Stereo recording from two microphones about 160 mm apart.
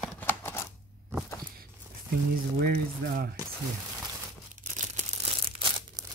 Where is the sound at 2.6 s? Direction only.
75° right (ahead or behind).